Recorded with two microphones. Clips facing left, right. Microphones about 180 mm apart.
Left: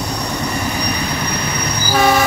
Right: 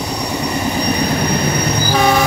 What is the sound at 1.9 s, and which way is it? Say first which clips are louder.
Vehicle: left 1 dB; 5° left (ahead or behind).